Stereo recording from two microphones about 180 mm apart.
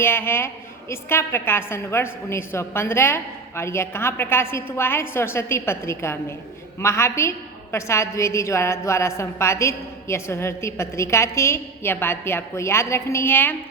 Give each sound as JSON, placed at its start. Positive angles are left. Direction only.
{"t": 0.0, "sound": "a woman's voice", "side_deg": 15}